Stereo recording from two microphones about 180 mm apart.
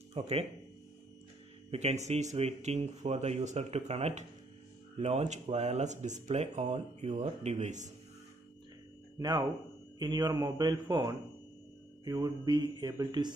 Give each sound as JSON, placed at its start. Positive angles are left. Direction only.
{"t": 0.1, "sound": "speech", "side_deg": -35}
{"t": 1.7, "sound": "speech", "side_deg": -35}
{"t": 9.2, "sound": "speech", "side_deg": -15}